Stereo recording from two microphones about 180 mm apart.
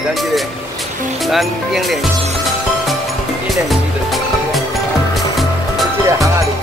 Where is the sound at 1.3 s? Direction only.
Centre (ahead or behind).